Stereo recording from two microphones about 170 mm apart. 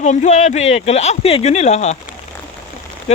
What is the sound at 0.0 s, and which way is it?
Speech, 45° left (ahead or behind).